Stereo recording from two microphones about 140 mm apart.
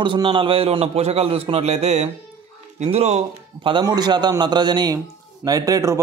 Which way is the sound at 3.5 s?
35° right (ahead or behind).